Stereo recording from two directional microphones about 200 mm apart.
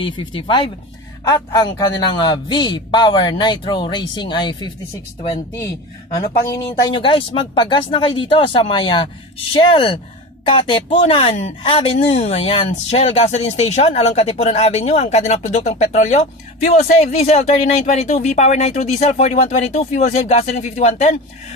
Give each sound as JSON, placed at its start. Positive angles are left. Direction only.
{"t": 0.0, "sound": "speech", "side_deg": 25}
{"t": 6.7, "sound": "speech", "side_deg": 25}